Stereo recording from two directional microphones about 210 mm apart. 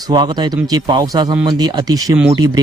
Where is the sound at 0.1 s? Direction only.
20° right (ahead or behind).